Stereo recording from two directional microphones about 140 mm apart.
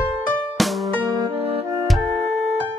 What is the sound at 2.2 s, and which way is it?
Music, 50° right (ahead or behind).